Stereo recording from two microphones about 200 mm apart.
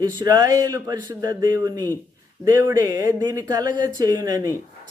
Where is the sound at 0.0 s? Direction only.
20° right (ahead or behind).